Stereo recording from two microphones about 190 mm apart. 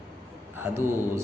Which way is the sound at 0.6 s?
10° right (ahead or behind).